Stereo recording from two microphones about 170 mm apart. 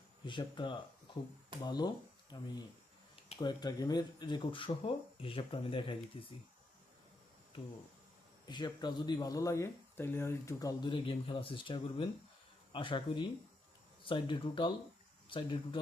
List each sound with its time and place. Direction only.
0.3 s speech: 30° left (ahead or behind)
8.4 s speech: 25° left (ahead or behind)